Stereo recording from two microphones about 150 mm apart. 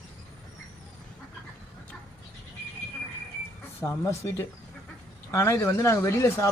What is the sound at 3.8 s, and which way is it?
Speech, 20° left (ahead or behind).